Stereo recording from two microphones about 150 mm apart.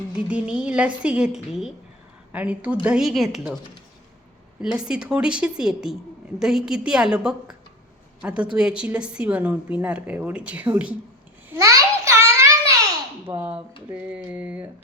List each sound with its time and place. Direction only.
0.3 s a woman's voice: 5° right (ahead or behind)
4.6 s a woman's voice: 5° right (ahead or behind)
11.4 s babbling: 20° right (ahead or behind)
13.3 s a woman's voice: 15° right (ahead or behind)